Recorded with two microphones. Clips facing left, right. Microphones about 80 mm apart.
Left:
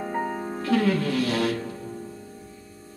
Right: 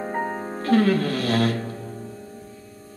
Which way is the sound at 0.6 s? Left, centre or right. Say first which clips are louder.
Right 4 dB; right.